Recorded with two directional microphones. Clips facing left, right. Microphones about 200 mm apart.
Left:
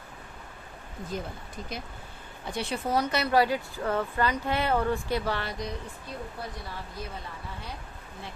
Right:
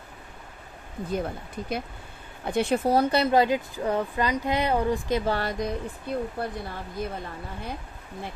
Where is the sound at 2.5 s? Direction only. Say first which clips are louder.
Right 9 dB; 50° right (ahead or behind).